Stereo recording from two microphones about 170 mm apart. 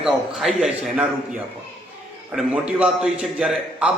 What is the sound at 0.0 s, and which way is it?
A man's voice, centre (ahead or behind).